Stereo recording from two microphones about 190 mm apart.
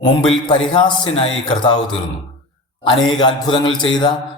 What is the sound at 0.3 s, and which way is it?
Speech, 30° left (ahead or behind).